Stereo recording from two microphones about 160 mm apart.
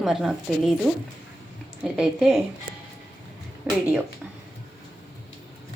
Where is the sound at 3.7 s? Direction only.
10° right (ahead or behind).